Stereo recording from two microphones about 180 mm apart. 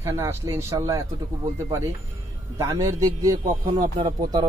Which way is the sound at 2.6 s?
20° right (ahead or behind).